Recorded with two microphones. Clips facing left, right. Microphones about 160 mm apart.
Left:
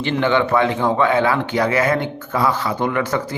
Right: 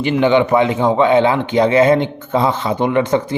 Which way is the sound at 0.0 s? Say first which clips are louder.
Right 5 dB; 15° right (ahead or behind).